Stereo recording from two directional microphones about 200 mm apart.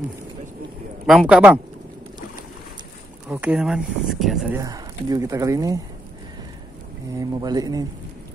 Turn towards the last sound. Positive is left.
turn(degrees=-20)  # may be behind; listen again after turning